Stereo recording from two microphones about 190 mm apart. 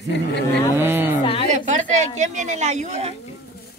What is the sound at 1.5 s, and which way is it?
Speech, 40° right (ahead or behind).